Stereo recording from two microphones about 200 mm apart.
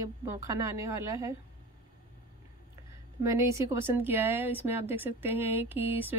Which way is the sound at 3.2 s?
15° right (ahead or behind).